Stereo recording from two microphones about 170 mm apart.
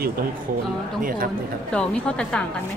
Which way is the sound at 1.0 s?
55° right (ahead or behind).